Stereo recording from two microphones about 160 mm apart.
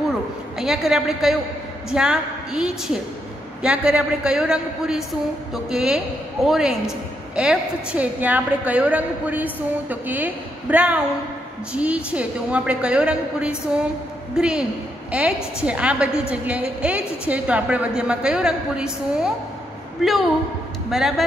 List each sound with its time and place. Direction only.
0.6 s a woman's voice: 5° right (ahead or behind)